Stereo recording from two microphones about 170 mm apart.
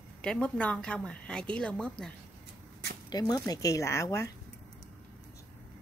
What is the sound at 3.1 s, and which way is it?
Speech, 25° left (ahead or behind).